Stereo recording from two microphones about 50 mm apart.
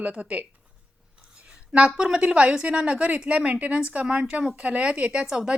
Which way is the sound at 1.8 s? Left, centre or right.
Right.